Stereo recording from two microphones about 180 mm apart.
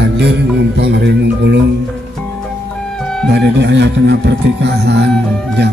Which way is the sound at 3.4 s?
75° right (ahead or behind).